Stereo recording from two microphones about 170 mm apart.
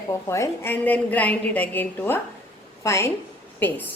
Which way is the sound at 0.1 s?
15° left (ahead or behind).